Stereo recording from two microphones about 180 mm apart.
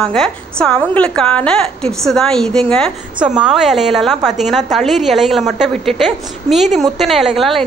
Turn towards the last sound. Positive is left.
turn(degrees=0)  # may be behind; listen again after turning